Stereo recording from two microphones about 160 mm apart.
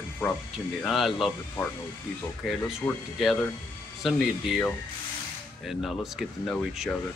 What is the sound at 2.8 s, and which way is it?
Speech, 10° left (ahead or behind).